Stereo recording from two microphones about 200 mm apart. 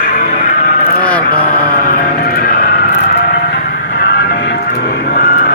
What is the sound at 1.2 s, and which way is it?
Music, 45° left (ahead or behind).